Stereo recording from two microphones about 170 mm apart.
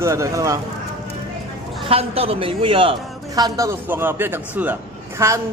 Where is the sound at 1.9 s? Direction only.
35° right (ahead or behind).